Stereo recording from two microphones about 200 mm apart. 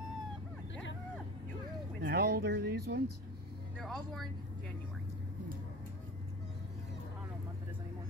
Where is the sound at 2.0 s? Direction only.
55° right (ahead or behind).